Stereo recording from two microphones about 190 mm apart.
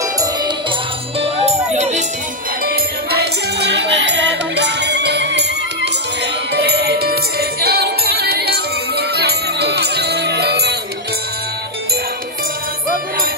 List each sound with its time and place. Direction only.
1.2 s music: 35° right (ahead or behind)
2.6 s music: 55° right (ahead or behind)
6.5 s music: 60° right (ahead or behind)